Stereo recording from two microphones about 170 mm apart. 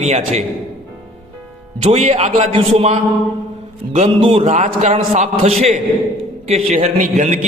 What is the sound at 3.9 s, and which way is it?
Mantra, 35° right (ahead or behind).